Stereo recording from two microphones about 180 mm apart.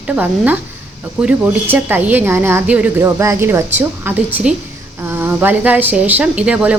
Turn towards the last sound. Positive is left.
turn(degrees=-5)  # may be behind; listen again after turning